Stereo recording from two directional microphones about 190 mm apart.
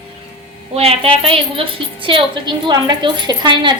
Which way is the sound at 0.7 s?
30° right (ahead or behind).